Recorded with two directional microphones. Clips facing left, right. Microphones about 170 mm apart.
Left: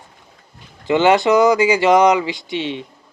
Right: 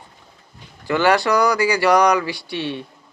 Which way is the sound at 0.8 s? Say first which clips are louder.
Left 4 dB; 20° left (ahead or behind).